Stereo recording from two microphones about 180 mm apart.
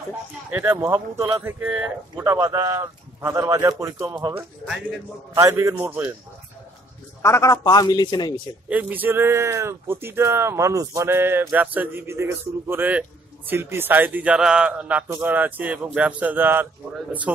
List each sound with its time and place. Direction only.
0.5 s speech: 10° right (ahead or behind)
7.2 s a man's voice: 15° left (ahead or behind)
8.6 s speech: 10° right (ahead or behind)